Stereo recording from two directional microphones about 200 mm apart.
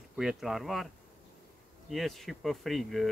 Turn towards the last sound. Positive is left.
turn(degrees=0)  # may be behind; listen again after turning